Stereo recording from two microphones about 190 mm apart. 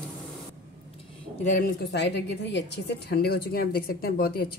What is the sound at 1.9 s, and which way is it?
A woman's voice, 65° left (ahead or behind).